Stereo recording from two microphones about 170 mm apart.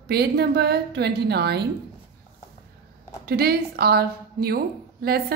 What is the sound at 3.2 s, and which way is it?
A woman's voice, 65° right (ahead or behind).